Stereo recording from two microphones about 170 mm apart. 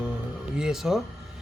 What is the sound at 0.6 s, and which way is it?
Speech, 5° right (ahead or behind).